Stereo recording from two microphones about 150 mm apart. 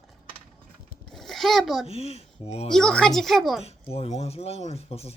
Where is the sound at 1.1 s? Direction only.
Centre (ahead or behind).